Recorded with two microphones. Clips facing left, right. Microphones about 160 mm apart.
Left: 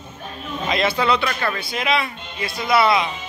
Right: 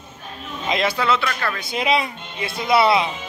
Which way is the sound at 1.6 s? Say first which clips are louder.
Right 5 dB; 25° right (ahead or behind).